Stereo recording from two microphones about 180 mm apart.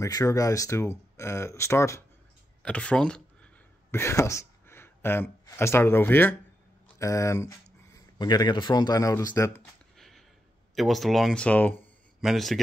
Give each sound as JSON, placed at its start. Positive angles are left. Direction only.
{"t": 0.0, "sound": "speech", "side_deg": 20}
{"t": 9.9, "sound": "a sound", "side_deg": 0}
{"t": 10.7, "sound": "speech", "side_deg": 0}